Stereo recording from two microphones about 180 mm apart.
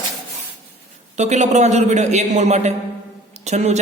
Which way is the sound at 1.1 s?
40° right (ahead or behind).